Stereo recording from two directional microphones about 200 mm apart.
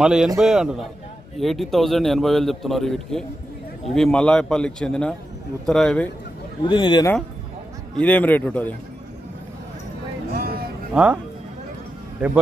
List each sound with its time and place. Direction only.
0.0 s a man's voice: 5° right (ahead or behind)
6.6 s a man's voice: 25° left (ahead or behind)
7.9 s a man's voice: 10° left (ahead or behind)
10.3 s music: 50° right (ahead or behind)
10.9 s a man's voice: 5° right (ahead or behind)